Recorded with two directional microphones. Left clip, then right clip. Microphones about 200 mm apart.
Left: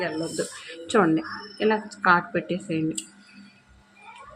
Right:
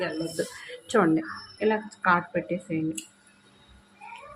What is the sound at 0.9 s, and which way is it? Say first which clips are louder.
Speech: left 2 dB; 10° left (ahead or behind).